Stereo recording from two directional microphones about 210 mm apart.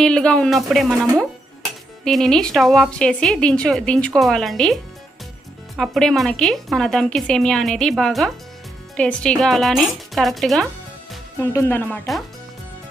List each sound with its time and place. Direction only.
0.0 s a woman's voice: 5° left (ahead or behind)
5.8 s a woman's voice: centre (ahead or behind)